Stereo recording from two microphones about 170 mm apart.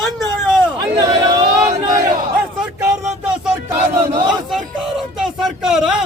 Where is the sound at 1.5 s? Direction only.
50° right (ahead or behind).